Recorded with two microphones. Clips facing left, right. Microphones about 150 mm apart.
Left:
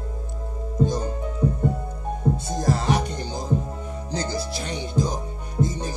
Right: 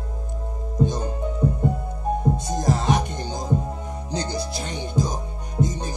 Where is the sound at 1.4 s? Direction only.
10° right (ahead or behind).